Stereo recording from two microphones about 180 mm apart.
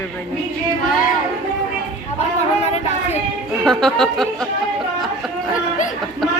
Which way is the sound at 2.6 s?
35° left (ahead or behind).